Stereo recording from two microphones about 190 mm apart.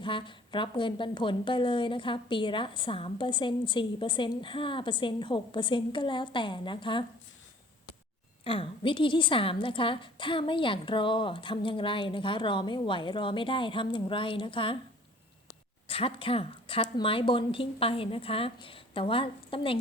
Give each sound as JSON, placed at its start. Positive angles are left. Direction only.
{"t": 0.0, "sound": "a woman's voice", "side_deg": 25}
{"t": 8.4, "sound": "a woman's voice", "side_deg": 25}
{"t": 15.9, "sound": "a woman's voice", "side_deg": 30}